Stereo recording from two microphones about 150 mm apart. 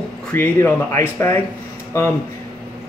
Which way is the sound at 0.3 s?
15° left (ahead or behind).